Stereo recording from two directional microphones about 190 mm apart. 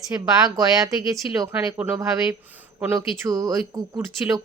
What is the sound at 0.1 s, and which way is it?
Speech, 10° right (ahead or behind).